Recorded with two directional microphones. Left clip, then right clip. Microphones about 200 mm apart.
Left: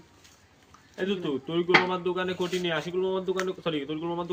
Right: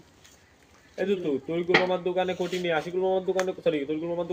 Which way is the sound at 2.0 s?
55° left (ahead or behind).